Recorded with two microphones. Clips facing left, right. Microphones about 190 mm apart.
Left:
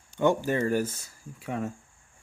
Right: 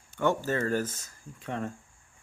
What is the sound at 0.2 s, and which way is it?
Speech, 15° left (ahead or behind).